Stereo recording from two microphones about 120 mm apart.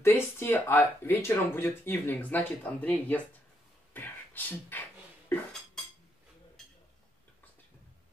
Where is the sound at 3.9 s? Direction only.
15° left (ahead or behind).